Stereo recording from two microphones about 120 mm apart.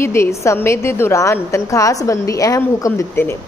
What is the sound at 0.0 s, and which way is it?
A woman's voice, 20° left (ahead or behind).